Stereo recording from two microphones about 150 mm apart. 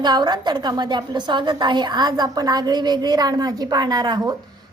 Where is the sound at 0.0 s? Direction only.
30° right (ahead or behind).